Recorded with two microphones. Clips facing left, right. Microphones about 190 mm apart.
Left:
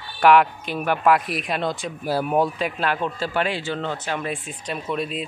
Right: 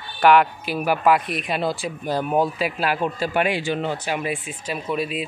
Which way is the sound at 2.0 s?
5° left (ahead or behind).